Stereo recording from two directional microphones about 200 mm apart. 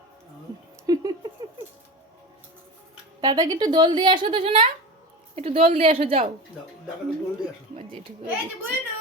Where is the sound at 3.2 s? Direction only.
20° right (ahead or behind).